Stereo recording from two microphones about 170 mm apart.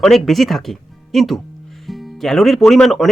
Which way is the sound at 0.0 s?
Centre (ahead or behind).